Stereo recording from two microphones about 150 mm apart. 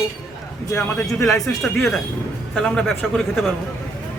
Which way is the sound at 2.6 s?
5° left (ahead or behind).